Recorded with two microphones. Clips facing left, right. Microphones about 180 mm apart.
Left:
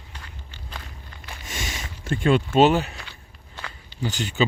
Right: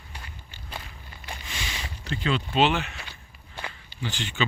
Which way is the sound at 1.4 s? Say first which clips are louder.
Left 5 dB; 45° left (ahead or behind).